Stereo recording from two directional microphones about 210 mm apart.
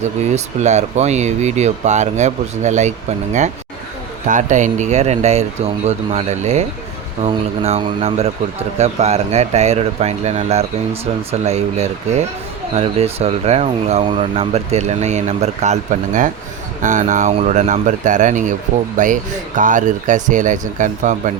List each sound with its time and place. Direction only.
0.3 s speech: 35° right (ahead or behind)